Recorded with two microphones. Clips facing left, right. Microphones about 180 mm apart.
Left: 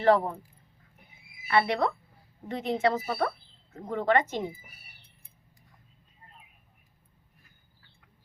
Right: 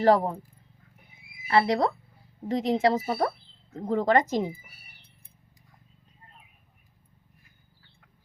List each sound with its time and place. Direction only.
0.0 s speech: 35° right (ahead or behind)
1.5 s speech: 35° right (ahead or behind)